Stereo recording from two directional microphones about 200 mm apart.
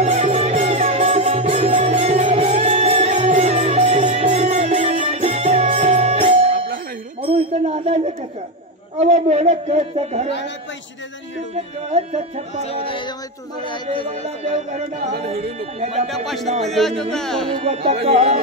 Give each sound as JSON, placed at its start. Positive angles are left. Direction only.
{"t": 0.0, "sound": "music", "side_deg": -35}
{"t": 7.2, "sound": "a sound", "side_deg": -30}
{"t": 9.0, "sound": "a sound", "side_deg": -35}
{"t": 11.5, "sound": "music", "side_deg": -30}
{"t": 12.6, "sound": "speech", "side_deg": 30}
{"t": 14.2, "sound": "music", "side_deg": -35}
{"t": 16.6, "sound": "speech", "side_deg": 0}
{"t": 18.0, "sound": "music", "side_deg": -30}